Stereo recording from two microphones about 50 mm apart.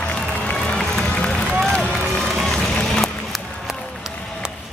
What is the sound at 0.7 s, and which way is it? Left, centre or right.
Run, centre.